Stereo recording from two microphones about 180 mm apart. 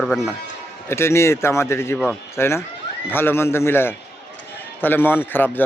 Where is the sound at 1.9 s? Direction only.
Centre (ahead or behind).